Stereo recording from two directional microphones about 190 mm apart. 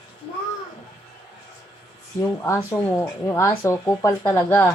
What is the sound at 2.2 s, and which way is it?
Speech, 15° left (ahead or behind).